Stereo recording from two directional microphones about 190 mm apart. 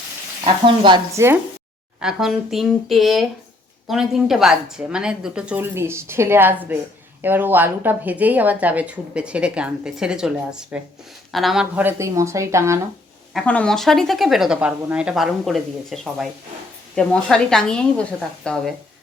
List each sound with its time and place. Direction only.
0.4 s speech: 25° right (ahead or behind)
2.0 s speech: 5° right (ahead or behind)
13.3 s speech: 5° left (ahead or behind)